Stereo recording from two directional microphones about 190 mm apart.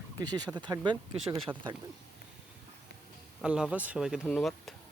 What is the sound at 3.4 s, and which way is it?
Speech, 5° right (ahead or behind).